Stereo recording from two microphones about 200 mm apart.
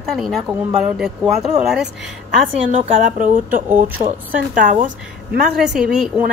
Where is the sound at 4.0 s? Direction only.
30° right (ahead or behind).